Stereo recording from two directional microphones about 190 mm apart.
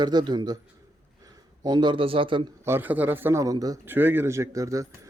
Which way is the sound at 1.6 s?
25° right (ahead or behind).